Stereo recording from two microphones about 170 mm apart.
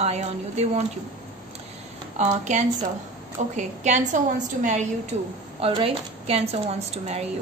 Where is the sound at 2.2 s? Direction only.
40° right (ahead or behind).